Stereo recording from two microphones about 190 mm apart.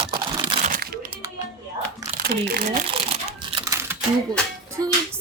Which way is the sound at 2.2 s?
55° right (ahead or behind).